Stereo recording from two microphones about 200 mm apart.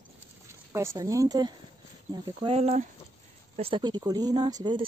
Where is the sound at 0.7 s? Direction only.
15° right (ahead or behind).